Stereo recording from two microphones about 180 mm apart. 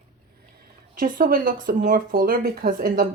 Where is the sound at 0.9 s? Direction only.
50° right (ahead or behind).